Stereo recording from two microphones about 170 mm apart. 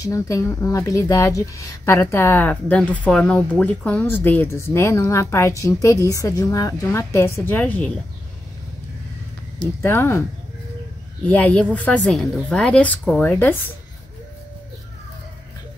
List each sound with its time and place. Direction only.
0.0 s speech: 20° left (ahead or behind)
9.8 s speech: 15° left (ahead or behind)
11.2 s speech: 10° left (ahead or behind)